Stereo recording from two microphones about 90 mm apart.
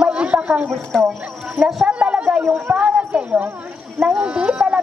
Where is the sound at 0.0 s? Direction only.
10° right (ahead or behind).